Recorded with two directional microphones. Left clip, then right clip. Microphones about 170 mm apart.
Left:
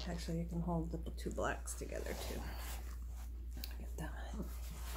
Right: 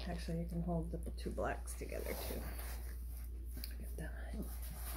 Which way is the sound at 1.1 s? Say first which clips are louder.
Left 1 dB; 10° left (ahead or behind).